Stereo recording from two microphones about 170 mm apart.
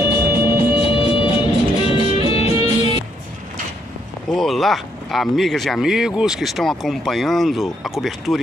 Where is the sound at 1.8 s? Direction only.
35° left (ahead or behind).